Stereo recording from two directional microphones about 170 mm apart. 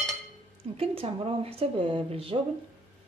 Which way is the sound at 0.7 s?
35° right (ahead or behind).